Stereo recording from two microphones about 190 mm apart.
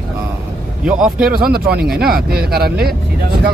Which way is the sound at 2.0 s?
55° right (ahead or behind).